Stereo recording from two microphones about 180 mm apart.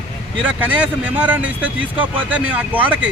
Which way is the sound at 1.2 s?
10° right (ahead or behind).